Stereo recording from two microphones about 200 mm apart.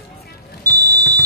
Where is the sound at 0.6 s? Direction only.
15° right (ahead or behind).